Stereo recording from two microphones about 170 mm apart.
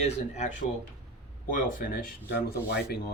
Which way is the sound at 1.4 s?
50° left (ahead or behind).